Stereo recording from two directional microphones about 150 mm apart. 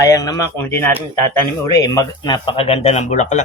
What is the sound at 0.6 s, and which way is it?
Speech, 15° left (ahead or behind).